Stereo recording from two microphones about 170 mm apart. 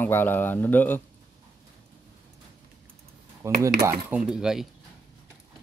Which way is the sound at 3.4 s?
15° right (ahead or behind).